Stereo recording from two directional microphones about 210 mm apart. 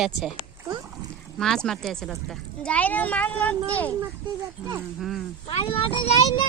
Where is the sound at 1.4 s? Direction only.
5° left (ahead or behind).